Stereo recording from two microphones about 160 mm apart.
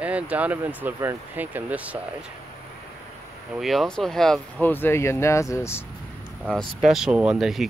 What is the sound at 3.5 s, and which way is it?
Speech, centre (ahead or behind).